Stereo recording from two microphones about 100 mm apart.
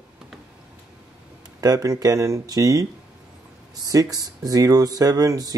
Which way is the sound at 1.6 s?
35° right (ahead or behind).